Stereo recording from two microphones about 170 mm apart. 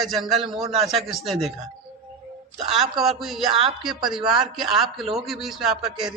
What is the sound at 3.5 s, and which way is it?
Speech, 30° right (ahead or behind).